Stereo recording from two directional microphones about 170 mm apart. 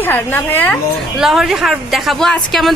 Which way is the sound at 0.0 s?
10° left (ahead or behind).